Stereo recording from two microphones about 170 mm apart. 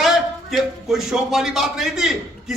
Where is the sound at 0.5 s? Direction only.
Centre (ahead or behind).